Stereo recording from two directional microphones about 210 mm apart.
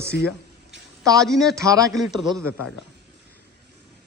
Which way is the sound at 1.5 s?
15° right (ahead or behind).